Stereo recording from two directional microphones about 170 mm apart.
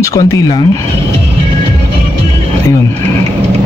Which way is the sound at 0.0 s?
20° left (ahead or behind).